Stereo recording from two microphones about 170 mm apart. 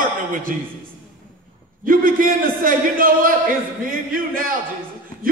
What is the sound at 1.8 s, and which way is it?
Speech, 55° right (ahead or behind).